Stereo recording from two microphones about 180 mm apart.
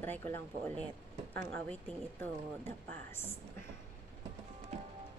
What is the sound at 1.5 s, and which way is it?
Speech, 10° left (ahead or behind).